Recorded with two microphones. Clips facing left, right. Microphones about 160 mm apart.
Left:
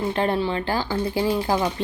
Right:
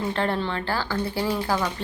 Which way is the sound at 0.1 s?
15° left (ahead or behind).